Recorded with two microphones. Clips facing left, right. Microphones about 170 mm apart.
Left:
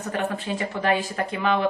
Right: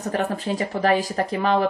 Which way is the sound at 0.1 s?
40° right (ahead or behind).